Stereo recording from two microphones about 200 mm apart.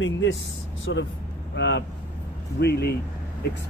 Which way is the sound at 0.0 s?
70° left (ahead or behind).